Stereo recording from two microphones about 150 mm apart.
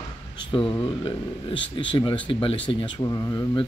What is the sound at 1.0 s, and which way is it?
Speech, 35° left (ahead or behind).